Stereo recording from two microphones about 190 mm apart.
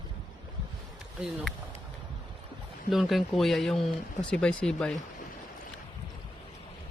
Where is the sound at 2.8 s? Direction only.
Centre (ahead or behind).